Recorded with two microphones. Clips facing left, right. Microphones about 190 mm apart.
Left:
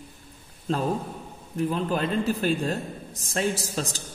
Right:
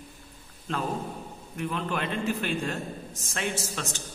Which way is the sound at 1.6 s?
35° left (ahead or behind).